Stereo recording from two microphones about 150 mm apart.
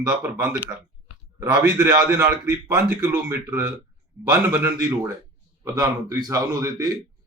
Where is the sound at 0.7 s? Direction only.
25° right (ahead or behind).